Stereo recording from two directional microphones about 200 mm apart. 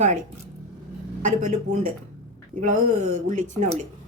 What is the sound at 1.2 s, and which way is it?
A woman's voice, 40° right (ahead or behind).